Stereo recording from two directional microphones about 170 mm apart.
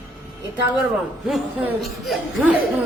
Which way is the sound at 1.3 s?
Centre (ahead or behind).